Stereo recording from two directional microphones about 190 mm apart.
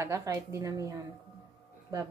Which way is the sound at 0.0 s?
15° right (ahead or behind).